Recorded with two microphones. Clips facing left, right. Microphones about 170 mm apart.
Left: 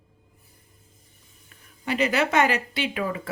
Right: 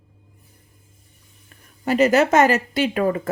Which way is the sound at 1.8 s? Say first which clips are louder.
Right 7 dB; 45° right (ahead or behind).